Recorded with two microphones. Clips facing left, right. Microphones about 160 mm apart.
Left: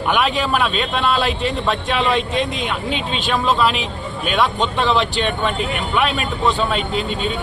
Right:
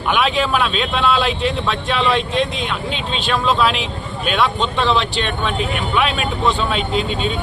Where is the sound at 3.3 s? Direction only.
5° left (ahead or behind).